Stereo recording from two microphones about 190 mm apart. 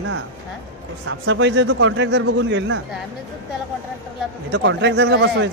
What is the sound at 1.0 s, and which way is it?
A man's voice, 75° right (ahead or behind).